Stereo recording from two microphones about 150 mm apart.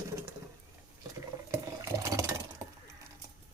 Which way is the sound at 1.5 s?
20° right (ahead or behind).